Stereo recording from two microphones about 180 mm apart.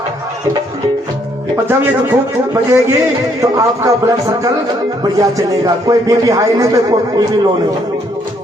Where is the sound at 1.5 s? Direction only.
15° right (ahead or behind).